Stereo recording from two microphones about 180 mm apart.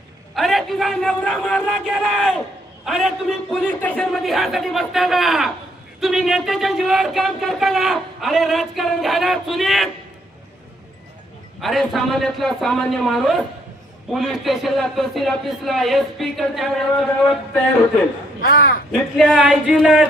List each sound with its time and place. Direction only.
0.3 s speech: centre (ahead or behind)
11.6 s speech: centre (ahead or behind)
18.4 s a man's voice: 55° left (ahead or behind)
18.9 s speech: centre (ahead or behind)